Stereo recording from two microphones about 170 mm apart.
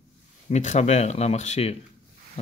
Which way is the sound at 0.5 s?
40° left (ahead or behind).